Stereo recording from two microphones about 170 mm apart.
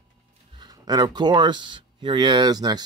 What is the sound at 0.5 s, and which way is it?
Speech, 25° right (ahead or behind).